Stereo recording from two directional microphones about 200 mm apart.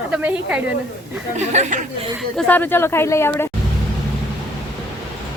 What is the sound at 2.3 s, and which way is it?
Speech, 10° left (ahead or behind).